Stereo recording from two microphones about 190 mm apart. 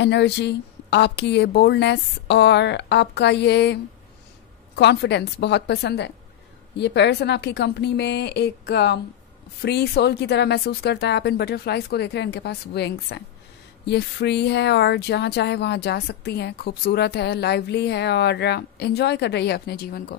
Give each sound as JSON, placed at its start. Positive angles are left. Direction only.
{"t": 0.0, "sound": "speech", "side_deg": 65}